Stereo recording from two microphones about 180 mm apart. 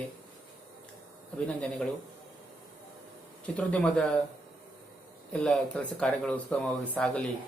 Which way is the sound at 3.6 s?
5° left (ahead or behind).